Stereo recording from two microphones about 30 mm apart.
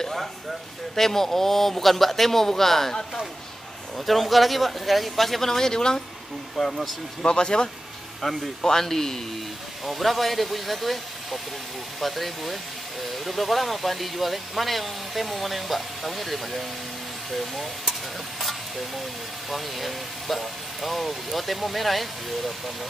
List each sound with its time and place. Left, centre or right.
0.9 s a man's voice: centre
4.0 s speech: centre; by 6.0 s left
6.6 s a man's voice: centre
7.2 s speech: left
8.2 s a man's voice: centre
9.8 s speech: centre
12.0 s speech: centre
18.4 s a sound: centre
19.5 s speech: centre